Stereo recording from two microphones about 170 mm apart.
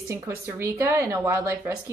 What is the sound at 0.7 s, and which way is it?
Speech, 15° right (ahead or behind).